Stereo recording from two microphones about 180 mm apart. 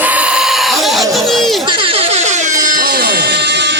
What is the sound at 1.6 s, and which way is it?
Music, 25° right (ahead or behind).